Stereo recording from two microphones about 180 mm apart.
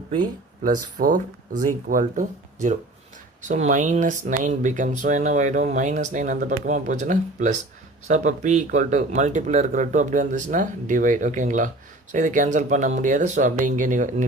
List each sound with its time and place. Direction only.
0.6 s speech: 50° right (ahead or behind)